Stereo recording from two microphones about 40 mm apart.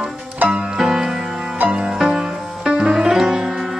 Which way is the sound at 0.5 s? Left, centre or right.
Right.